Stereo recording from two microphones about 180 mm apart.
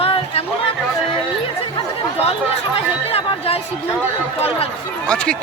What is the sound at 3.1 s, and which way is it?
Chatter, 30° left (ahead or behind).